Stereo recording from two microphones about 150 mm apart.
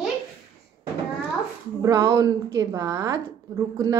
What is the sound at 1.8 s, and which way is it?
A woman's voice, 25° right (ahead or behind).